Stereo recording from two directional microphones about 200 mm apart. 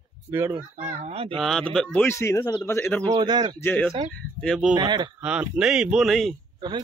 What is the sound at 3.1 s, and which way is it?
Speech, 20° right (ahead or behind).